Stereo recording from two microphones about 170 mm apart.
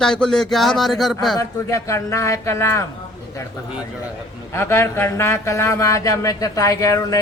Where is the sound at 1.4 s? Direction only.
15° left (ahead or behind).